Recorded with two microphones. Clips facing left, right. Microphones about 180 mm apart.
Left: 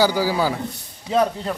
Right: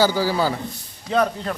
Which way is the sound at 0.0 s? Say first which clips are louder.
Even; 15° left (ahead or behind).